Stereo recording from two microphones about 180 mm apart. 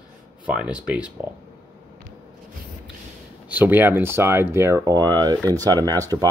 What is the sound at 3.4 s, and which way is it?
Speech, 10° right (ahead or behind).